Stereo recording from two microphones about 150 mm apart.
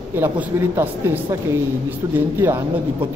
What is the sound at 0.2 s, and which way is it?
Speech, 15° right (ahead or behind).